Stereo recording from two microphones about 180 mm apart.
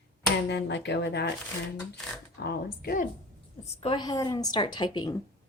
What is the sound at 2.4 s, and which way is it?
Speech, 55° left (ahead or behind).